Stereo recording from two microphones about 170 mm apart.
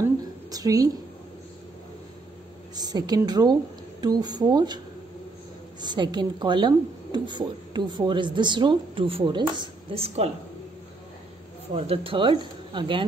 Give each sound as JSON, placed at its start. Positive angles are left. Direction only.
{"t": 0.5, "sound": "a woman's voice", "side_deg": -20}
{"t": 2.7, "sound": "a woman's voice", "side_deg": -25}
{"t": 5.8, "sound": "a woman's voice", "side_deg": -25}
{"t": 11.7, "sound": "a woman's voice", "side_deg": -35}